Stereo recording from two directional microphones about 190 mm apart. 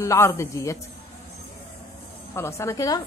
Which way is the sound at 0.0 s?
15° left (ahead or behind).